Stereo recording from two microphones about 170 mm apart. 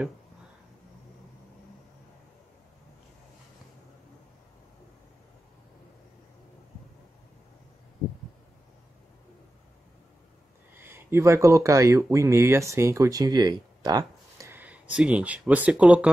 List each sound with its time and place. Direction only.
10.8 s speech: 15° right (ahead or behind)